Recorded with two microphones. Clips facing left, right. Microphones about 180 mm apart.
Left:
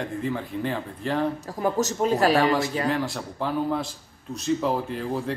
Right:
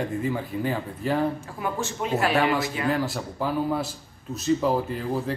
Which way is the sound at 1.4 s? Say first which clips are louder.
Left 5 dB; 40° left (ahead or behind).